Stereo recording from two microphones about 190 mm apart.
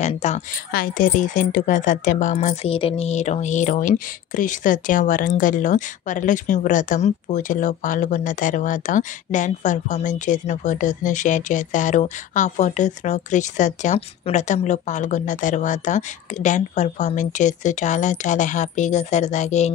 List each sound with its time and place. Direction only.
0.0 s speech: 35° left (ahead or behind)
0.7 s speech: 45° left (ahead or behind)